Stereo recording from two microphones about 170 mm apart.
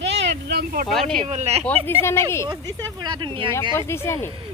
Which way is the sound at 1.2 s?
40° right (ahead or behind).